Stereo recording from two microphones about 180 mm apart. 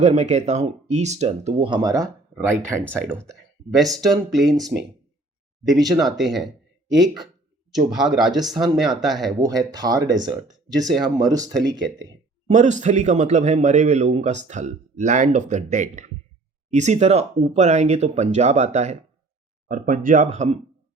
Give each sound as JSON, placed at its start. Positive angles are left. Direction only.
{"t": 0.0, "sound": "a man's voice", "side_deg": -40}
{"t": 2.7, "sound": "speech", "side_deg": 5}
{"t": 4.0, "sound": "speech", "side_deg": 0}
{"t": 5.6, "sound": "speech", "side_deg": 0}
{"t": 9.4, "sound": "speech", "side_deg": -20}
{"t": 12.5, "sound": "a man's voice", "side_deg": -40}